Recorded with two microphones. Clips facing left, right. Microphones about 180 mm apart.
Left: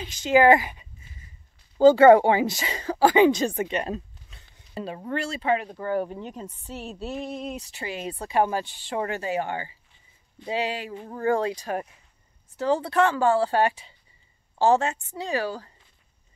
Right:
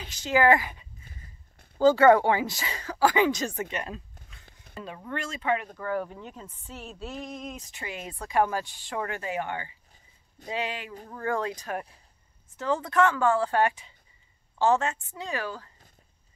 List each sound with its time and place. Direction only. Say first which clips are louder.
0.2 s speech: left 5 dB; 20° left (ahead or behind)
3.7 s a sound: left 7 dB; 30° left (ahead or behind)
4.7 s a woman's voice: left 6 dB; 30° left (ahead or behind)
12.5 s a woman's voice: left 3 dB; 35° left (ahead or behind)